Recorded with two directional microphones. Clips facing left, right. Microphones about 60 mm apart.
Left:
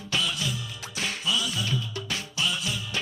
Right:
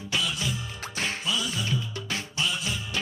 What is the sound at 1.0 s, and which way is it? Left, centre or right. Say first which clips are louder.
Music: left 1 dB; right.